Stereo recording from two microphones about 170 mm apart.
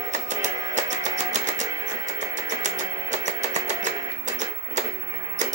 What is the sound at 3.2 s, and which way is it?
Music, 45° right (ahead or behind).